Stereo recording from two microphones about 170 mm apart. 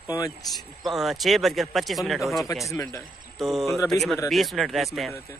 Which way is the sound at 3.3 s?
Centre (ahead or behind).